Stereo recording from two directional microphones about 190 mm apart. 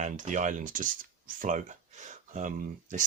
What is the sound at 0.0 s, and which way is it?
Speech, 40° right (ahead or behind).